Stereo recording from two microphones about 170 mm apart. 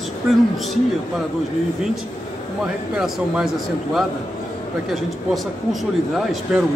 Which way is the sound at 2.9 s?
Centre (ahead or behind).